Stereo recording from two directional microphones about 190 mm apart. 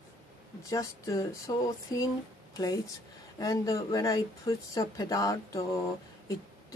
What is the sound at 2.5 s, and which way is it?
Speech, 20° left (ahead or behind).